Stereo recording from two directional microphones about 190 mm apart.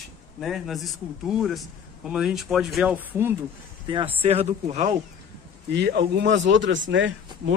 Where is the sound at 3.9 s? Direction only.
30° right (ahead or behind).